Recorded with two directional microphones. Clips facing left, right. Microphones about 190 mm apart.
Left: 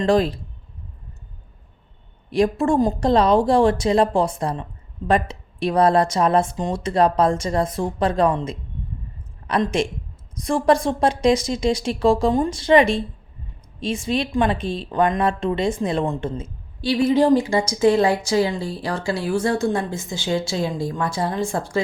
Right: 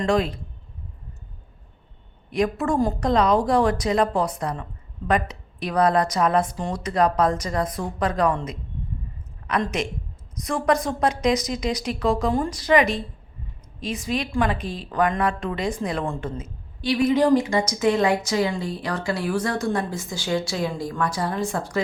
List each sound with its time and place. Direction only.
0.0 s a man's voice: 30° left (ahead or behind)
2.3 s speech: 30° left (ahead or behind)